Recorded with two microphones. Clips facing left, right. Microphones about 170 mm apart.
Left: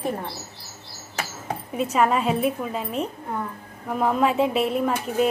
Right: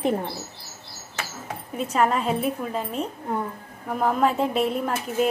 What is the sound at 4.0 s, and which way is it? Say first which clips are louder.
A woman's voice: left 1 dB; centre (ahead or behind).